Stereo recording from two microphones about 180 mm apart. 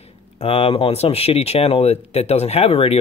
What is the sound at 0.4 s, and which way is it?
Speech, 30° left (ahead or behind).